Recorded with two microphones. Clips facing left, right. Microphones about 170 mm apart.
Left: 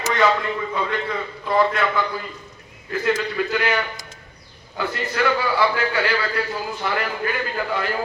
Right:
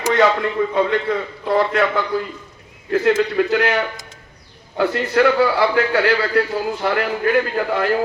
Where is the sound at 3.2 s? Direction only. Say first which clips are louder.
Right 6 dB; 60° right (ahead or behind).